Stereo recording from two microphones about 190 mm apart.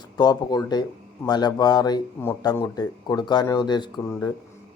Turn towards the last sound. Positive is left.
turn(degrees=20)  # may be behind; listen again after turning